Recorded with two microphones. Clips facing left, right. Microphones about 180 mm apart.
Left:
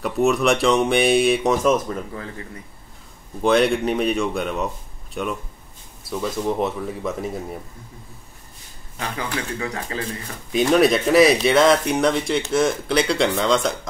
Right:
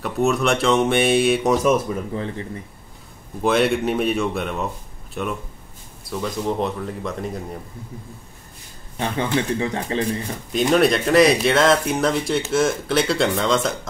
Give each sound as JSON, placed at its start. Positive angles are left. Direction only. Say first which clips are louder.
{"t": 0.0, "sound": "speech", "louder": "left 1 dB", "side_deg": 0}
{"t": 2.1, "sound": "speech", "louder": "right 6 dB", "side_deg": -25}
{"t": 3.4, "sound": "speech", "louder": "left 1 dB", "side_deg": 0}
{"t": 8.9, "sound": "speech", "louder": "right 6 dB", "side_deg": -30}
{"t": 10.7, "sound": "speech", "louder": "even", "side_deg": 0}